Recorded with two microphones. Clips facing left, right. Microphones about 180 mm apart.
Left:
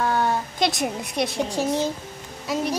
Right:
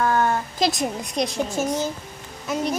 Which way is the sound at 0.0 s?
10° left (ahead or behind).